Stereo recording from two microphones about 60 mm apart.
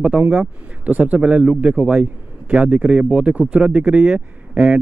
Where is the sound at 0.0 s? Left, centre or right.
Centre.